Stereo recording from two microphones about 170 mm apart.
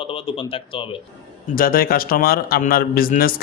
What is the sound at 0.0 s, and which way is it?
Speech, 30° left (ahead or behind).